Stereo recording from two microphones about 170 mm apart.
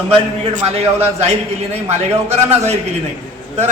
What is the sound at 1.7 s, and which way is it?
A man's voice, 40° right (ahead or behind).